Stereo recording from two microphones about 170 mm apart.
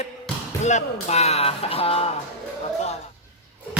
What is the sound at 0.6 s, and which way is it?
Speech, 45° left (ahead or behind).